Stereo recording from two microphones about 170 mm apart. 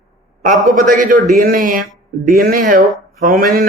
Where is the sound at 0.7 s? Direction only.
55° right (ahead or behind).